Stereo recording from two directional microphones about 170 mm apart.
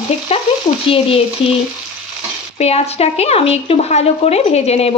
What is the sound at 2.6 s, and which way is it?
Speech, 35° left (ahead or behind).